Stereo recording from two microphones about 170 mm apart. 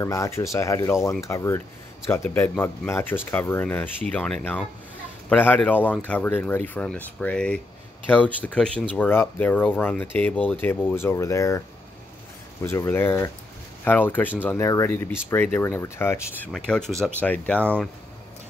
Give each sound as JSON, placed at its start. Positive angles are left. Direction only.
{"t": 0.0, "sound": "speech", "side_deg": 20}
{"t": 12.6, "sound": "speech", "side_deg": 15}
{"t": 16.5, "sound": "speech", "side_deg": 5}